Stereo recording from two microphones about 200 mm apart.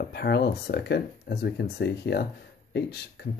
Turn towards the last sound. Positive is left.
turn(degrees=55)  # may be behind; listen again after turning